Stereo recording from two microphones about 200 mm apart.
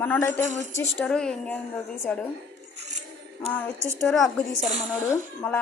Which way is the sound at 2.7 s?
35° right (ahead or behind).